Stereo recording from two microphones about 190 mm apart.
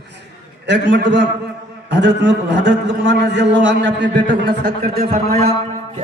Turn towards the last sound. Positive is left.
turn(degrees=-50)  # may be behind; listen again after turning